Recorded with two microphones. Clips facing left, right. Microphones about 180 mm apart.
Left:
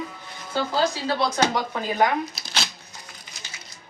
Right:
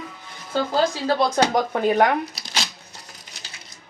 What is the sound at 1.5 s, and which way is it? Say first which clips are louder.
Speech: right 7 dB; 60° right (ahead or behind).